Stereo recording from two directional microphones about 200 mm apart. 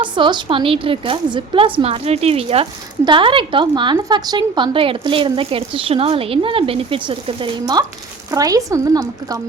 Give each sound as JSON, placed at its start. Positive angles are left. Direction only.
{"t": 0.0, "sound": "a woman's voice", "side_deg": -25}